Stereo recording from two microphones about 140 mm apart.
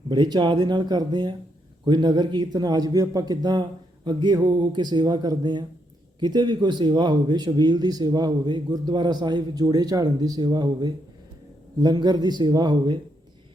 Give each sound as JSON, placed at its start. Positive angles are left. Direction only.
{"t": 0.1, "sound": "speech", "side_deg": -30}